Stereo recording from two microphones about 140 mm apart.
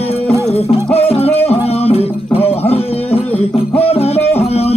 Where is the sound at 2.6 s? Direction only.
45° left (ahead or behind).